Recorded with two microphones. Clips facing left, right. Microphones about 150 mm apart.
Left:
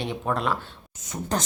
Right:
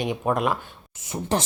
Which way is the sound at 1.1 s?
25° right (ahead or behind).